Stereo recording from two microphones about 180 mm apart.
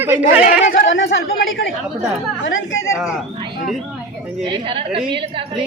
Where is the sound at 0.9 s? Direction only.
90° left.